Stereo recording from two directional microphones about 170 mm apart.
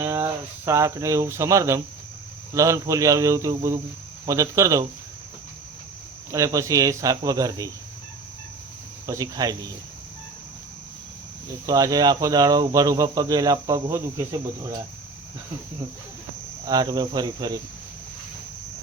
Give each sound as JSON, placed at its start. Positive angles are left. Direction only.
{"t": 0.0, "sound": "speech", "side_deg": -15}
{"t": 6.3, "sound": "speech", "side_deg": -20}
{"t": 9.0, "sound": "speech", "side_deg": -20}
{"t": 11.6, "sound": "speech", "side_deg": -20}
{"t": 16.6, "sound": "speech", "side_deg": -25}